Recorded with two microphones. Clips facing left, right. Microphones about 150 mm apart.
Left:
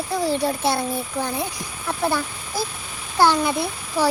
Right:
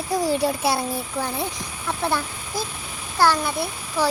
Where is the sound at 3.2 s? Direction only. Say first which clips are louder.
Left 2 dB; 15° left (ahead or behind).